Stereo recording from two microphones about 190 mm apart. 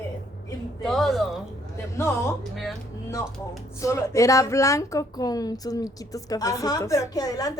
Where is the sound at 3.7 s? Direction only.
15° left (ahead or behind).